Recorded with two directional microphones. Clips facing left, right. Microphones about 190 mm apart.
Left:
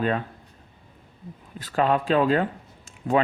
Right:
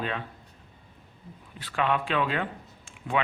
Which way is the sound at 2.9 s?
40° left (ahead or behind).